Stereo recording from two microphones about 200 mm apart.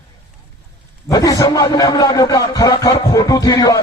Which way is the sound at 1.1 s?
20° left (ahead or behind).